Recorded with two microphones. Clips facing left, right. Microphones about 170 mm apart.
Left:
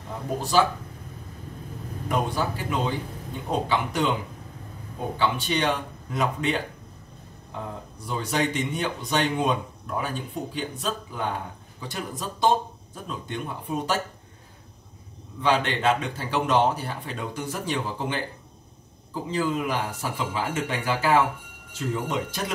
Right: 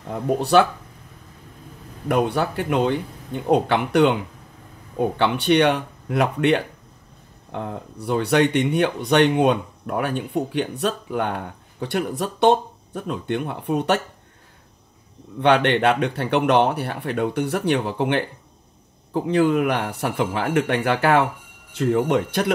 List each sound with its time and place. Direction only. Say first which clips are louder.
0.4 s speech: right 5 dB; 65° right (ahead or behind)
2.0 s speech: right 6 dB; 65° right (ahead or behind)
15.4 s speech: right 6 dB; 65° right (ahead or behind)